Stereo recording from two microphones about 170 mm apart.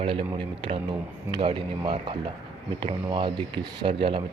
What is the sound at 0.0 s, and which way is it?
A man's voice, 30° right (ahead or behind).